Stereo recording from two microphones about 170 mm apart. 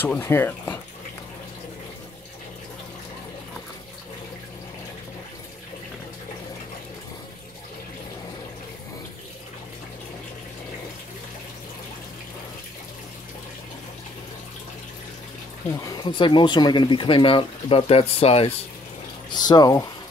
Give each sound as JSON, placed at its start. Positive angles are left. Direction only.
{"t": 0.0, "sound": "speech", "side_deg": 10}
{"t": 15.7, "sound": "speech", "side_deg": 20}
{"t": 19.3, "sound": "speech", "side_deg": 25}